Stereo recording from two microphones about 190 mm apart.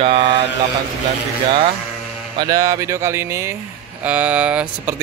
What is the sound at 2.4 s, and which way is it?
Speech, 20° right (ahead or behind).